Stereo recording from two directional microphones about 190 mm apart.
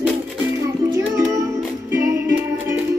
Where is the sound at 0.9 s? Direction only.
10° right (ahead or behind).